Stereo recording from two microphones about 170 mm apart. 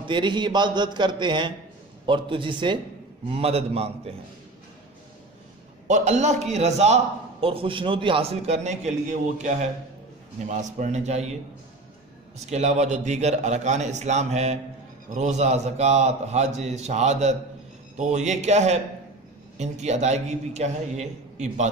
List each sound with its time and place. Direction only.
0.0 s a man's voice: 30° right (ahead or behind)
5.9 s a man's voice: 45° right (ahead or behind)
12.4 s a man's voice: 40° right (ahead or behind)